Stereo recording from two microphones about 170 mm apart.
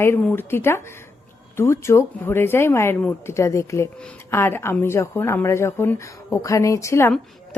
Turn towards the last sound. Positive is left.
turn(degrees=15)  # may be behind; listen again after turning